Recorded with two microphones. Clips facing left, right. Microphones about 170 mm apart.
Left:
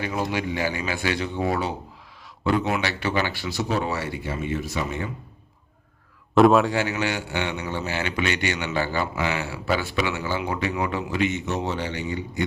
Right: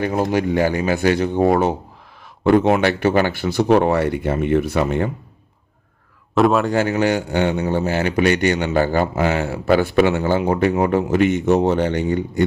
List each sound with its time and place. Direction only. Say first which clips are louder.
0.0 s a man's voice: right 8 dB; 45° right (ahead or behind)
6.3 s a man's voice: even; centre (ahead or behind)
6.7 s a man's voice: right 7 dB; 45° right (ahead or behind)